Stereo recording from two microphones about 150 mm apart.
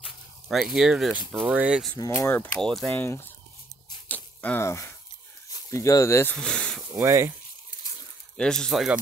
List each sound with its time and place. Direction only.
0.0 s a sound: centre (ahead or behind)
1.4 s speech: 5° right (ahead or behind)
2.1 s speech: 15° left (ahead or behind)
2.9 s speech: 15° left (ahead or behind)
4.1 s a sound: 10° left (ahead or behind)
5.7 s speech: 20° left (ahead or behind)
6.3 s speech: 5° left (ahead or behind)
6.9 s speech: 20° right (ahead or behind)
8.4 s speech: 5° left (ahead or behind)